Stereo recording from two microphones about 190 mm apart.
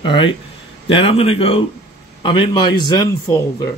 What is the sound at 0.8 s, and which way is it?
Speech, 30° left (ahead or behind).